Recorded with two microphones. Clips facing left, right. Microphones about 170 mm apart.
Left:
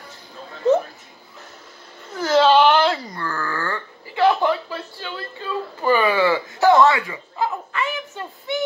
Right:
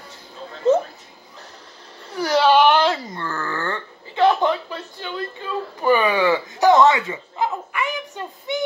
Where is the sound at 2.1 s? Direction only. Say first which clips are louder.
Left 1 dB; 15° right (ahead or behind).